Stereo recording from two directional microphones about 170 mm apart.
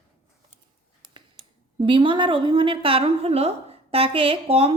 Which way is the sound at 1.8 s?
30° right (ahead or behind).